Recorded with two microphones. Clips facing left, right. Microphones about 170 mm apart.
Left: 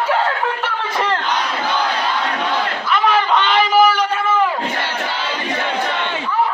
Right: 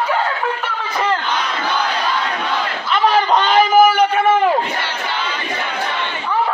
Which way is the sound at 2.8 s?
35° right (ahead or behind).